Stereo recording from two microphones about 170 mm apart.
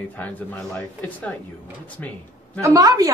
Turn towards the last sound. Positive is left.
turn(degrees=-20)  # may be behind; listen again after turning